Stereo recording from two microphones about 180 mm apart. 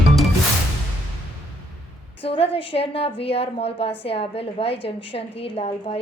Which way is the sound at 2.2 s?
30° left (ahead or behind).